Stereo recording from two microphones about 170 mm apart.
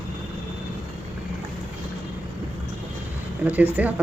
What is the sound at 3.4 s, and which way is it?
Speech, 10° right (ahead or behind).